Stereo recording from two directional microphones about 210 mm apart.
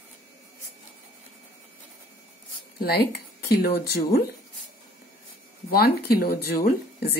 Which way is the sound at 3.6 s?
50° left (ahead or behind).